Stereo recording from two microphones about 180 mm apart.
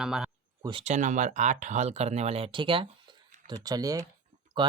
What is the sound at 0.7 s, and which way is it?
Speech, 35° right (ahead or behind).